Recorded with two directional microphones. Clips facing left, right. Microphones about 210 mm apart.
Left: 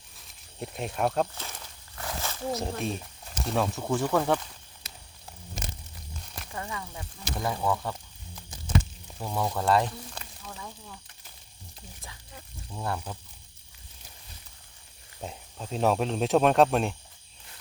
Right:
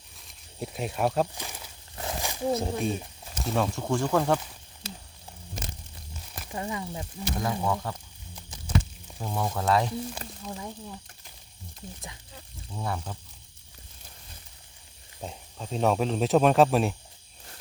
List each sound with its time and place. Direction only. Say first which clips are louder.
0.2 s a sound: right 2 dB; centre (ahead or behind)
1.4 s walk: right 2 dB; 10° right (ahead or behind)
2.0 s a sound: right 3 dB; 20° right (ahead or behind)
2.6 s speech: right 3 dB; centre (ahead or behind)
6.5 s speech: right 5 dB; 20° right (ahead or behind)
7.3 s speech: even; centre (ahead or behind)
9.1 s speech: left 1 dB; centre (ahead or behind)
10.4 s speech: right 7 dB; 20° right (ahead or behind)
12.7 s speech: even; centre (ahead or behind)
15.2 s speech: even; centre (ahead or behind)